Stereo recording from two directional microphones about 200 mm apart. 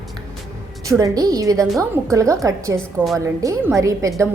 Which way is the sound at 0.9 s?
15° right (ahead or behind).